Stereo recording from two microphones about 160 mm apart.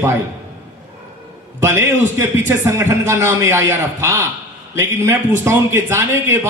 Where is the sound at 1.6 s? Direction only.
15° right (ahead or behind).